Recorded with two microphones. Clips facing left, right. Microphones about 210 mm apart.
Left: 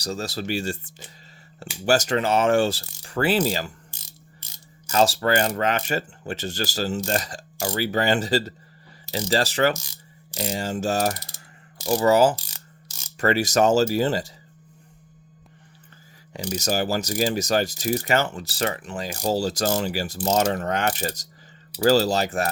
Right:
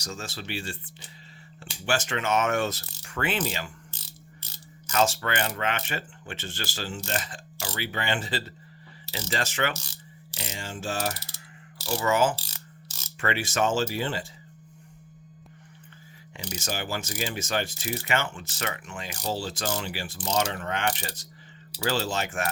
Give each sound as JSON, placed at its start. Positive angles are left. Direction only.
{"t": 0.0, "sound": "speech", "side_deg": 35}
{"t": 3.0, "sound": "pulleys", "side_deg": 35}
{"t": 3.9, "sound": "ratchet", "side_deg": 10}
{"t": 4.9, "sound": "speech", "side_deg": 35}
{"t": 9.7, "sound": "speech", "side_deg": 10}
{"t": 10.3, "sound": "speech", "side_deg": 35}
{"t": 16.6, "sound": "speech", "side_deg": 40}